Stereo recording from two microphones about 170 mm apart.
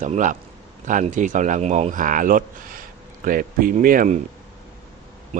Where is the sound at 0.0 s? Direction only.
45° right (ahead or behind).